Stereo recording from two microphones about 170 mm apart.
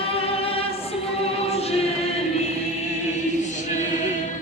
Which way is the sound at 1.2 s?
35° left (ahead or behind).